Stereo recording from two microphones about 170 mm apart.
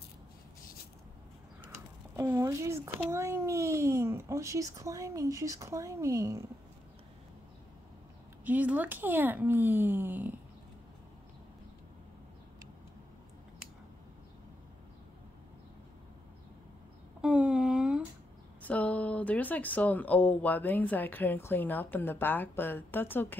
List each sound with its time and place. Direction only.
2.1 s a child's voice: 15° right (ahead or behind)
8.5 s a child's voice: 10° right (ahead or behind)
17.2 s a sound: 5° right (ahead or behind)
18.6 s speech: 10° left (ahead or behind)